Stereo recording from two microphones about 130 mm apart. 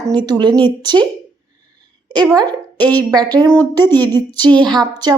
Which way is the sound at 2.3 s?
30° right (ahead or behind).